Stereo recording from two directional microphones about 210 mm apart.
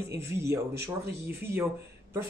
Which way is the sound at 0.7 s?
50° right (ahead or behind).